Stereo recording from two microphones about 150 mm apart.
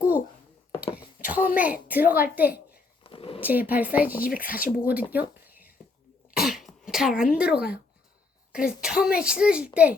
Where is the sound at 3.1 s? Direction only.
40° left (ahead or behind).